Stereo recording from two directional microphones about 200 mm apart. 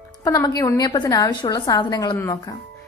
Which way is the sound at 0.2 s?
20° left (ahead or behind).